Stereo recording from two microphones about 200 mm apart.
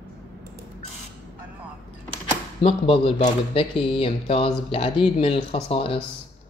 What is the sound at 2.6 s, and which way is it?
Speech, 25° left (ahead or behind).